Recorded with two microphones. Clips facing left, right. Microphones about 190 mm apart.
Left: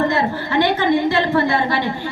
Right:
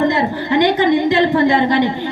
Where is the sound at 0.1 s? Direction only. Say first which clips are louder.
Right 3 dB; 15° right (ahead or behind).